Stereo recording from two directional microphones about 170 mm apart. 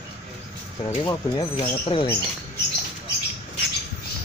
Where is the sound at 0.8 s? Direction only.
30° left (ahead or behind).